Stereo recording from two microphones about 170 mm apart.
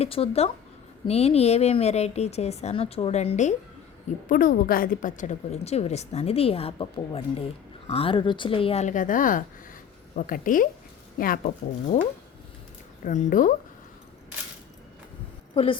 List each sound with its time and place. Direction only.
0.0 s a woman's voice: 35° left (ahead or behind)
4.3 s a woman's voice: 55° left (ahead or behind)
13.1 s a woman's voice: 50° left (ahead or behind)
15.5 s a woman's voice: 30° left (ahead or behind)